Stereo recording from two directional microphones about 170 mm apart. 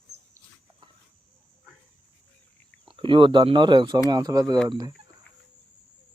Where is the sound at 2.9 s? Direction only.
30° right (ahead or behind).